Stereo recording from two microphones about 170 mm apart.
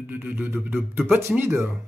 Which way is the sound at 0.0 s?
10° right (ahead or behind).